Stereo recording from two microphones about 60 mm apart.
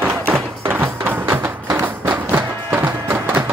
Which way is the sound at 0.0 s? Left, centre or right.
Right.